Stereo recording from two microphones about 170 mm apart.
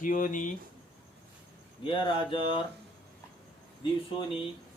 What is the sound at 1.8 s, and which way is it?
Speech, 30° left (ahead or behind).